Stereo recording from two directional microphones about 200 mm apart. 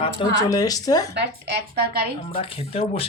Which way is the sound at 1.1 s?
60° right (ahead or behind).